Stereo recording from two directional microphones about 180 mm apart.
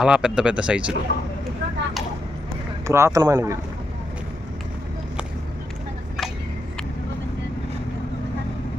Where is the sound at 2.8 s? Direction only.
15° right (ahead or behind).